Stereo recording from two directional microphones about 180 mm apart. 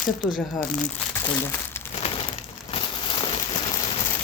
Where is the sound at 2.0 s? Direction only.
35° left (ahead or behind).